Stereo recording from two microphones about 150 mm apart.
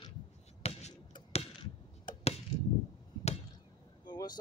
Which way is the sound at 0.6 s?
45° left (ahead or behind).